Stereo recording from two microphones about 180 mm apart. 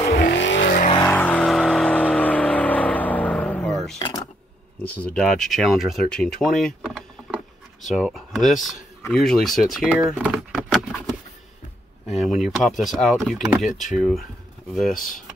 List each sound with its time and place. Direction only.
0.3 s vehicle: 80° left
1.0 s vehicle: 10° left (ahead or behind)
5.0 s speech: 5° left (ahead or behind)
12.1 s speech: centre (ahead or behind)